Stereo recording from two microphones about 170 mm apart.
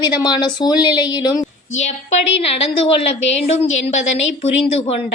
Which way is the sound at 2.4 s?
35° left (ahead or behind).